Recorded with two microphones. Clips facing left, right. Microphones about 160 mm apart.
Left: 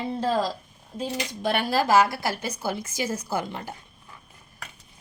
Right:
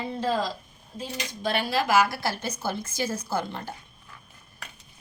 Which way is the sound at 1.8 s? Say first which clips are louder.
Left 2 dB; 30° left (ahead or behind).